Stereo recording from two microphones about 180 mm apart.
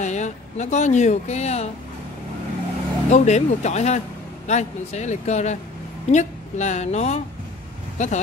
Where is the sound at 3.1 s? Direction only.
40° left (ahead or behind).